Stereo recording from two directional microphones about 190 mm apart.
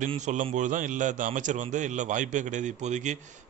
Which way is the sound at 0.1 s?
40° right (ahead or behind).